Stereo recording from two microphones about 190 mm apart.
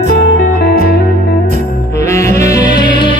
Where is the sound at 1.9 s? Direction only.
15° left (ahead or behind).